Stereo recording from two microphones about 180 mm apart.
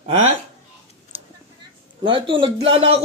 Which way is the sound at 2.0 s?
25° right (ahead or behind).